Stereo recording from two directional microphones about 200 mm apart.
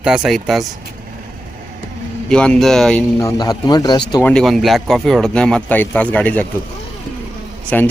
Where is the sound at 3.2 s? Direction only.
20° left (ahead or behind).